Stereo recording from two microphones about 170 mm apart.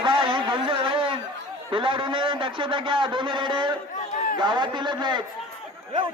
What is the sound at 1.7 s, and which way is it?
A man's voice, 30° right (ahead or behind).